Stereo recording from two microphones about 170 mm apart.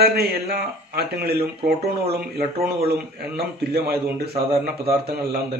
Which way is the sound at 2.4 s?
65° right (ahead or behind).